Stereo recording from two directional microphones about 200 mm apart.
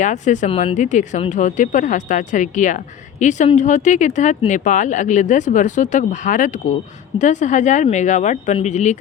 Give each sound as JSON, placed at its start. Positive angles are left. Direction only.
{"t": 0.0, "sound": "speech", "side_deg": 35}